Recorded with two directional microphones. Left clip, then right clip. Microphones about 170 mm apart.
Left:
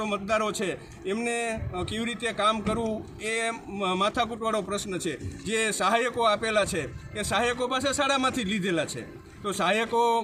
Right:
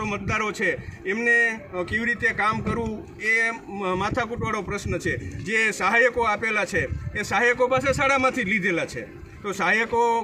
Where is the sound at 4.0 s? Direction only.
15° right (ahead or behind).